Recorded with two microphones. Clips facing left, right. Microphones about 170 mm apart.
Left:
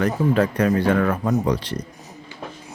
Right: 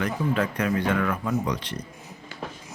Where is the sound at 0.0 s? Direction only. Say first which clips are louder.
Left 6 dB; 35° left (ahead or behind).